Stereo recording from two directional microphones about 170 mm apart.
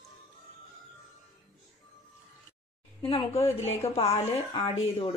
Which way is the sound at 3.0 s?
30° left (ahead or behind).